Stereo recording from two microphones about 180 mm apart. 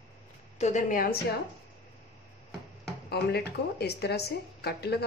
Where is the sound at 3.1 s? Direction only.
65° left (ahead or behind).